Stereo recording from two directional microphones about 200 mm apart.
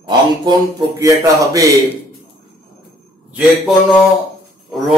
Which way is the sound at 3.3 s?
5° right (ahead or behind).